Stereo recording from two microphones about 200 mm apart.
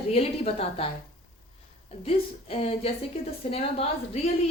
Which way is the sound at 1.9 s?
30° left (ahead or behind).